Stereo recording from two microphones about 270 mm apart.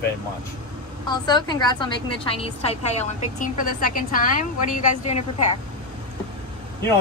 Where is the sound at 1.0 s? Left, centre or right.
Centre.